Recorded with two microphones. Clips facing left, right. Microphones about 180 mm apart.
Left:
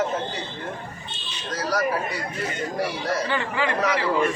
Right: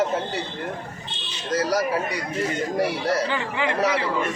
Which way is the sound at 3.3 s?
15° right (ahead or behind).